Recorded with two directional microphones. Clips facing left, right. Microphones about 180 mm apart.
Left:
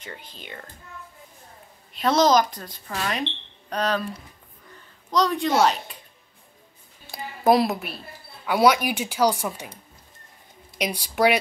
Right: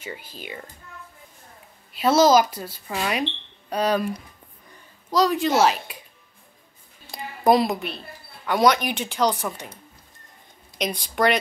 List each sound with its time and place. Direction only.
0.0 s speech: 10° right (ahead or behind)
2.0 s a woman's voice: 5° right (ahead or behind)
7.1 s a woman's voice: centre (ahead or behind)
10.8 s speech: 10° left (ahead or behind)